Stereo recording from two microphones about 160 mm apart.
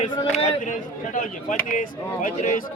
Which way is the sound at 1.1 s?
55° left (ahead or behind).